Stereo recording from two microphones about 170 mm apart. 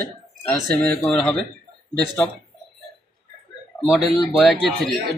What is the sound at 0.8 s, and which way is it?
Speech, 5° left (ahead or behind).